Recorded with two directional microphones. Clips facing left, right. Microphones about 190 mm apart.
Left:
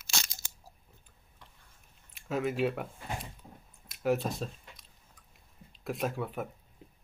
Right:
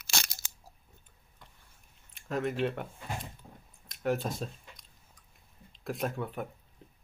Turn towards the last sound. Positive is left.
turn(degrees=0)  # may be behind; listen again after turning